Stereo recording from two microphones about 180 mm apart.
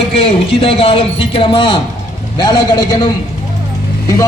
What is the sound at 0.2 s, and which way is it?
A man's voice, 30° left (ahead or behind).